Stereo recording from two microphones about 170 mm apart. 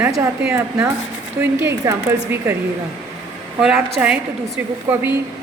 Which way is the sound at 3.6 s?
5° right (ahead or behind).